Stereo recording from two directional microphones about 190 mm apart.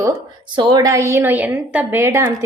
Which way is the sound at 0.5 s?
25° right (ahead or behind).